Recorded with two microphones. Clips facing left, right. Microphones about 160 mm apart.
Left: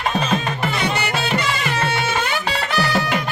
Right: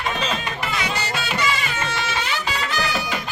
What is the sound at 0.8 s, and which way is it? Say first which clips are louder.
Music: left 4 dB; 60° left (ahead or behind).